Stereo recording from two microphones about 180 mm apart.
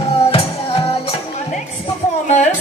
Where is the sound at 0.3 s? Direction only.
35° left (ahead or behind).